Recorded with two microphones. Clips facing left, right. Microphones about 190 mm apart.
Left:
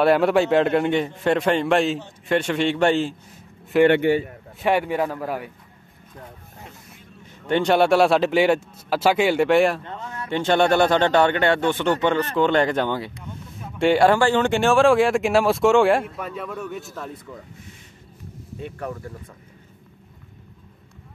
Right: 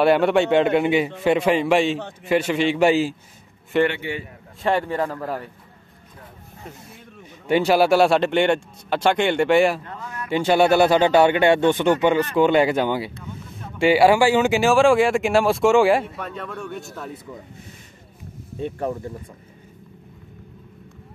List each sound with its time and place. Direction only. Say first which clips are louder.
0.0 s a man's voice: even; centre (ahead or behind)
7.4 s speech: right 1 dB; 5° right (ahead or behind)
9.8 s a sound: left 1 dB; 25° left (ahead or behind)
10.3 s speech: right 2 dB; 5° right (ahead or behind)
13.5 s speech: right 1 dB; centre (ahead or behind)
18.6 s speech: right 6 dB; 25° right (ahead or behind)